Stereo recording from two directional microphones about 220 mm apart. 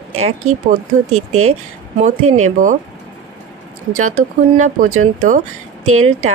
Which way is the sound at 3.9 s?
35° right (ahead or behind).